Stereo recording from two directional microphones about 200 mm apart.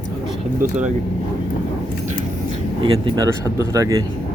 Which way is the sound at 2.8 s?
20° right (ahead or behind).